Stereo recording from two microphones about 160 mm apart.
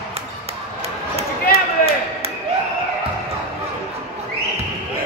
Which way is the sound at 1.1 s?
40° right (ahead or behind).